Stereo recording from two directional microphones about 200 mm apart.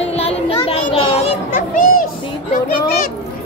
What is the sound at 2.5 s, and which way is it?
Speech, 50° left (ahead or behind).